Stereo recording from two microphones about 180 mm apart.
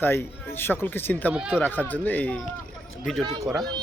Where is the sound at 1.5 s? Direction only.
10° left (ahead or behind).